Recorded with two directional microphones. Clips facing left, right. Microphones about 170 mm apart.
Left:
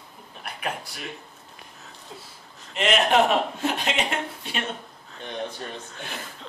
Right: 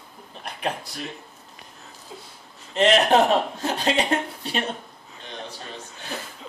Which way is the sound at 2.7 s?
35° right (ahead or behind).